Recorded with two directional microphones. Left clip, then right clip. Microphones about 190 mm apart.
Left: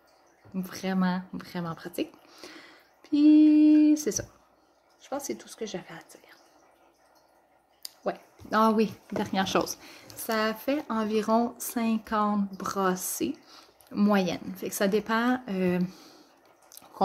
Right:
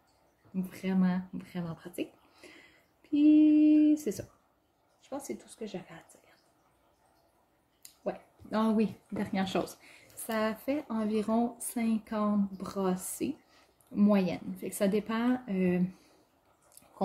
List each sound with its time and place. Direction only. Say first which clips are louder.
0.7 s speech: left 4 dB; 10° right (ahead or behind)
7.8 s speech: left 5 dB; 10° right (ahead or behind)